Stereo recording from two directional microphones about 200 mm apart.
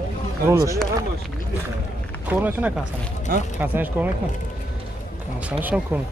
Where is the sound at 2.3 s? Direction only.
10° right (ahead or behind).